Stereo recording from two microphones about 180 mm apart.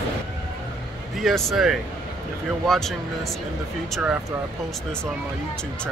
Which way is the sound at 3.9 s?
5° right (ahead or behind).